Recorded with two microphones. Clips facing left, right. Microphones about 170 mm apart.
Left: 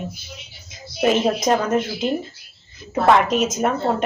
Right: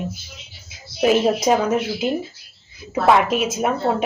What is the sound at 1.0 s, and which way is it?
Speech, 10° right (ahead or behind).